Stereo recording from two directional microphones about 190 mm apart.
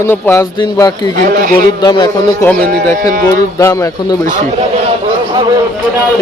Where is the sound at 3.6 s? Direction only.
15° left (ahead or behind).